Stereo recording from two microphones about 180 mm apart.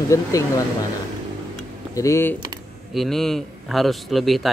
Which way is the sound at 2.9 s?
Centre (ahead or behind).